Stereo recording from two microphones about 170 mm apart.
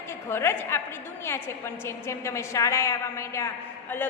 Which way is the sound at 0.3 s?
15° left (ahead or behind).